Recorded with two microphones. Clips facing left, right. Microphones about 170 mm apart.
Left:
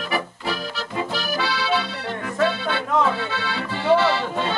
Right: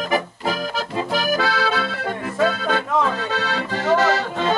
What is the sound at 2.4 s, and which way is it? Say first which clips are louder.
Music: right 2 dB; 45° right (ahead or behind).